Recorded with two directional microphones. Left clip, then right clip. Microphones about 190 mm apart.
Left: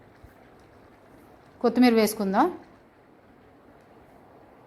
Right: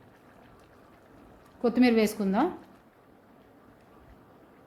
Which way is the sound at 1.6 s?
5° left (ahead or behind).